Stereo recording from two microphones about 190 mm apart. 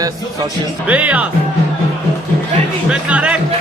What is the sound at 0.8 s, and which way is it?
Speech, 5° right (ahead or behind).